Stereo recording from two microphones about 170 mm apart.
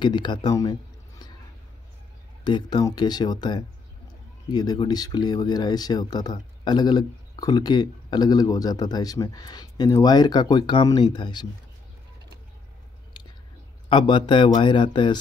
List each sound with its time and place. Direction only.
0.0 s speech: 25° left (ahead or behind)
2.4 s speech: 25° left (ahead or behind)
13.8 s speech: 30° left (ahead or behind)